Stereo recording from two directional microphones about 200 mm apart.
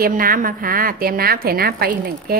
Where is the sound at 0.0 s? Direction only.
45° right (ahead or behind).